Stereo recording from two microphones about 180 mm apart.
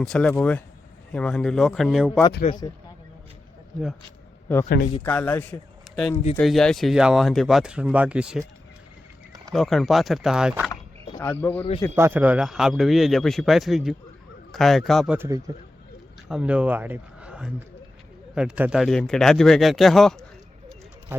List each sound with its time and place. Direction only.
0.0 s speech: 5° left (ahead or behind)
2.5 s speech: 20° left (ahead or behind)
4.5 s a man's voice: 10° left (ahead or behind)
9.5 s speech: centre (ahead or behind)
10.7 s mechanisms: 15° left (ahead or behind)
11.9 s speech: 10° right (ahead or behind)
16.3 s speech: 5° right (ahead or behind)